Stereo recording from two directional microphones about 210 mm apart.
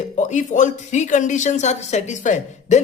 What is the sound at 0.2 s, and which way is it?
Speech, 35° left (ahead or behind).